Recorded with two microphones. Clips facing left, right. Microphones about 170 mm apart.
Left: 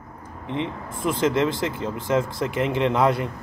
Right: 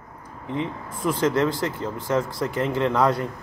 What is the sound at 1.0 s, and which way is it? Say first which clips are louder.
Speech: even; 25° left (ahead or behind).